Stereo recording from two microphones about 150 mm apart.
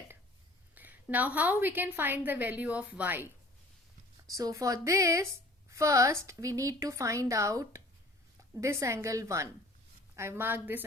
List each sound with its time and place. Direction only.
0.8 s a woman's voice: 10° right (ahead or behind)
4.3 s a woman's voice: 20° right (ahead or behind)